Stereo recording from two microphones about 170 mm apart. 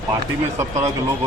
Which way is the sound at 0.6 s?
20° right (ahead or behind).